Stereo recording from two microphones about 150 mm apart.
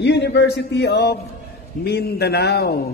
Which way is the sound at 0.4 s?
90° left.